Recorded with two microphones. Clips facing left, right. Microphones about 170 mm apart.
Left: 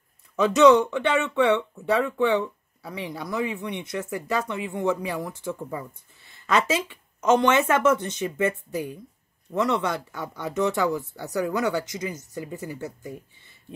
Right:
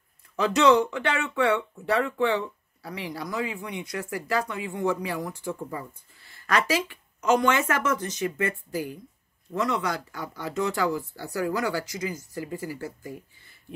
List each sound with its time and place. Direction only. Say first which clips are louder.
0.4 s speech: left 4 dB; 20° left (ahead or behind)